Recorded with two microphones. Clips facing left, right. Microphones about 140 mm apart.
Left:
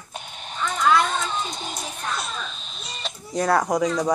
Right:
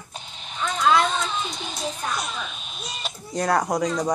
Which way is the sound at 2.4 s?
5° right (ahead or behind).